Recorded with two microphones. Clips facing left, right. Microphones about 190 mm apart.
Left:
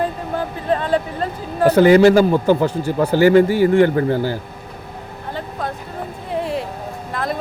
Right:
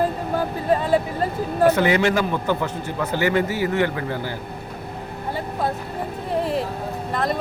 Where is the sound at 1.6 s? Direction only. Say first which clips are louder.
Left 7 dB; 35° left (ahead or behind).